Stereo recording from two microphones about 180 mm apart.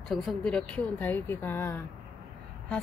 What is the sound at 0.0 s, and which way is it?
A woman's voice, centre (ahead or behind).